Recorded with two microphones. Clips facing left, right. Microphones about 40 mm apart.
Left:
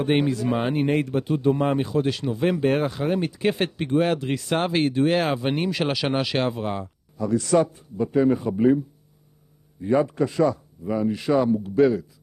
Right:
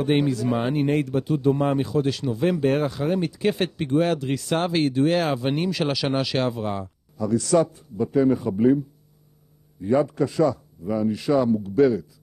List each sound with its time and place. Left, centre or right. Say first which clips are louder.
0.0 s speech: even; left
9.8 s speech: even; left